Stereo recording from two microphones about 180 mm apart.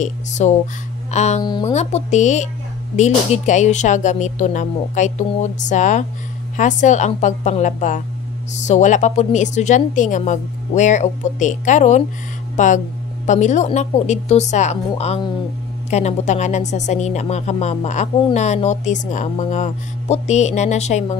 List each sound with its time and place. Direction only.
0.0 s a woman's voice: 40° left (ahead or behind)
1.4 s speech: 20° left (ahead or behind)
1.7 s a woman's voice: 35° left (ahead or behind)